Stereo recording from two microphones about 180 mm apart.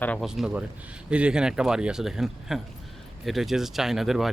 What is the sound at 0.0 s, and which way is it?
Speech, 10° left (ahead or behind).